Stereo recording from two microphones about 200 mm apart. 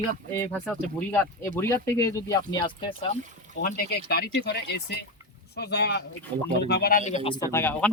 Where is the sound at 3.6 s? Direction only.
50° left (ahead or behind); by 7.4 s 25° left (ahead or behind).